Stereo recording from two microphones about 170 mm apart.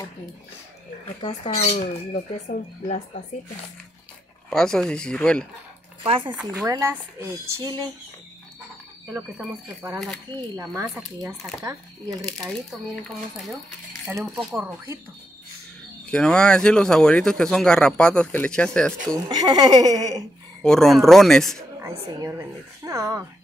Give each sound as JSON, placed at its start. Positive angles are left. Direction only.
{"t": 1.4, "sound": "speech", "side_deg": 40}
{"t": 4.5, "sound": "speech", "side_deg": 5}
{"t": 6.0, "sound": "speech", "side_deg": -30}
{"t": 6.4, "sound": "speech", "side_deg": -20}
{"t": 9.1, "sound": "speech", "side_deg": -5}
{"t": 10.5, "sound": "speech", "side_deg": -20}
{"t": 12.2, "sound": "speech", "side_deg": 0}
{"t": 14.3, "sound": "speech", "side_deg": -10}
{"t": 16.1, "sound": "speech", "side_deg": 5}
{"t": 19.2, "sound": "speech", "side_deg": -25}
{"t": 20.6, "sound": "speech", "side_deg": 0}
{"t": 21.8, "sound": "speech", "side_deg": -15}